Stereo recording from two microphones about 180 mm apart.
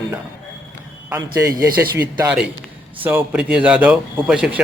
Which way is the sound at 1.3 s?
20° right (ahead or behind).